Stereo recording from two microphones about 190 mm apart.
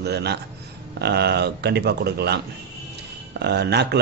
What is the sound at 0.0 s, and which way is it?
A man's voice, 60° right (ahead or behind).